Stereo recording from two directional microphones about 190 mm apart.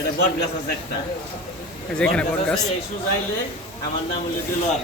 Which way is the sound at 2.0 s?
5° left (ahead or behind).